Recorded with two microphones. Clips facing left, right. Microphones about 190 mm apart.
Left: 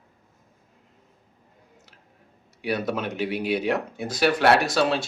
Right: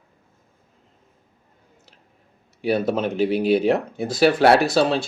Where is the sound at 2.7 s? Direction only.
30° right (ahead or behind).